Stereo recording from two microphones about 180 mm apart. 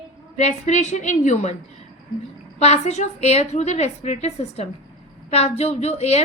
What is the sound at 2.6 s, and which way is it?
A woman's voice, 35° left (ahead or behind).